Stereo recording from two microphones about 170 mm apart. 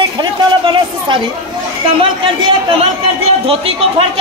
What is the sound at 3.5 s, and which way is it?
Speech, 35° right (ahead or behind).